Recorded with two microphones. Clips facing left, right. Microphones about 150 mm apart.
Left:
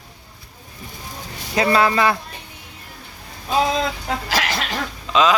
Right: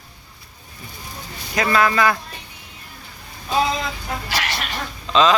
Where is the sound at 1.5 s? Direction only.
30° left (ahead or behind).